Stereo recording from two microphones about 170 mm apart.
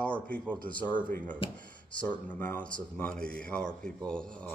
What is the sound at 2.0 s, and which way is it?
A man's voice, 10° left (ahead or behind).